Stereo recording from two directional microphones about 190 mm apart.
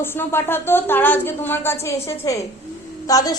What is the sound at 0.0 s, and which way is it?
A woman's voice, 10° left (ahead or behind).